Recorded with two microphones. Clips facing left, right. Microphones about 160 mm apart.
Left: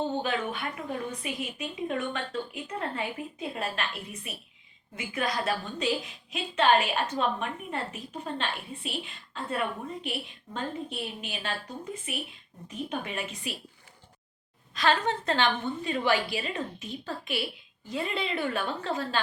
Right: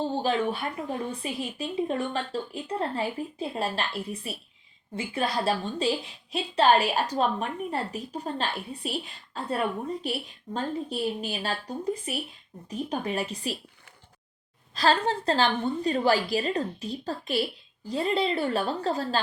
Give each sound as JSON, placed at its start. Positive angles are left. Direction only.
{"t": 0.2, "sound": "a woman's voice", "side_deg": -35}
{"t": 14.8, "sound": "a woman's voice", "side_deg": -35}